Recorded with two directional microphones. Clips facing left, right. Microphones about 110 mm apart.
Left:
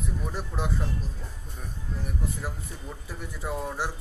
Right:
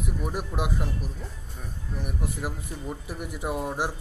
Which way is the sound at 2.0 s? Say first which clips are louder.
Right 2 dB; 15° right (ahead or behind).